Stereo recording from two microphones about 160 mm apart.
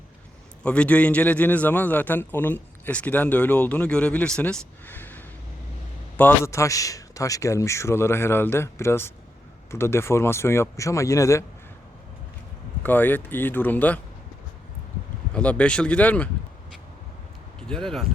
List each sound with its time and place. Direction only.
0.6 s a man's voice: 5° left (ahead or behind)
12.8 s a man's voice: 10° left (ahead or behind)
15.3 s a man's voice: 10° left (ahead or behind)
17.6 s speech: 5° left (ahead or behind)